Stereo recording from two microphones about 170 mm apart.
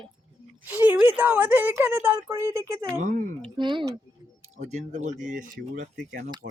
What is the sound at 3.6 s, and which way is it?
Speech, 30° right (ahead or behind).